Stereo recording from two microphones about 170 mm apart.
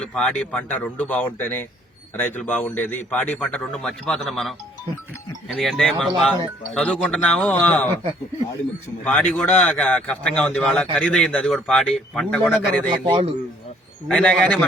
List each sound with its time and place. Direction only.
0.0 s a man's voice: 5° left (ahead or behind)
9.0 s a man's voice: 5° left (ahead or behind)
13.1 s a man's voice: 30° right (ahead or behind)
14.1 s a man's voice: 5° left (ahead or behind)